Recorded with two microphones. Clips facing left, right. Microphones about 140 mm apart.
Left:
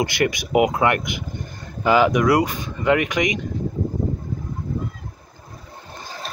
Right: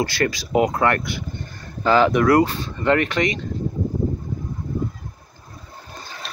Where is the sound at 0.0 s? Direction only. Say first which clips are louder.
Left 1 dB; 20° left (ahead or behind).